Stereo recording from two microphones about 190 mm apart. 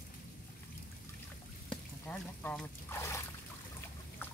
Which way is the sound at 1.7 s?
5° left (ahead or behind).